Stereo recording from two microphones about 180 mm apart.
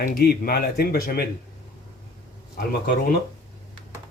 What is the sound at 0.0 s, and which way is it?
Speech, 55° left (ahead or behind).